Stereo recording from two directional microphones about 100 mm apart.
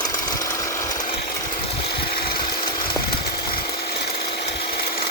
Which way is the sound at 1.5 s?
60° left (ahead or behind).